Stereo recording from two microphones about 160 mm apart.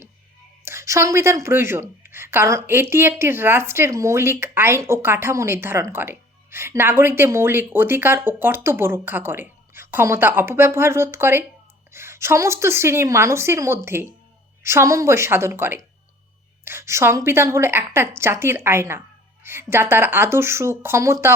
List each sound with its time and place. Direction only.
0.6 s a woman's voice: 15° right (ahead or behind)